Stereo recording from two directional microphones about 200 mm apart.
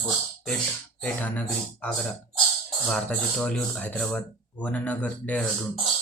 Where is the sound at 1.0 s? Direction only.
5° left (ahead or behind).